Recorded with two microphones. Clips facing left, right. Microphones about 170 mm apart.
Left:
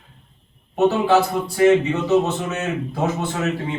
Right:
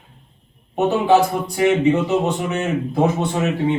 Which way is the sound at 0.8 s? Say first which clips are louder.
Right 1 dB; 15° right (ahead or behind).